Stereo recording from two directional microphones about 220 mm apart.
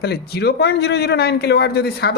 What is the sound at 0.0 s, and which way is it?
A man's voice, 45° left (ahead or behind).